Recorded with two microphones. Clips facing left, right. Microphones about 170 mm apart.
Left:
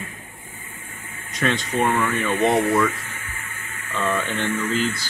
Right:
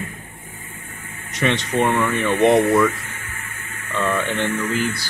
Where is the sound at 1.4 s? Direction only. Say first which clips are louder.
Right 2 dB; 10° right (ahead or behind).